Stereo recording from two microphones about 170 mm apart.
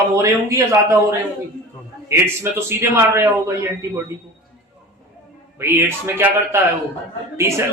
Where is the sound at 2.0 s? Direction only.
15° right (ahead or behind).